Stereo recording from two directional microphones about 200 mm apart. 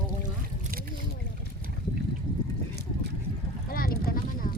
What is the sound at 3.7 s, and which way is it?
Boat, 45° left (ahead or behind).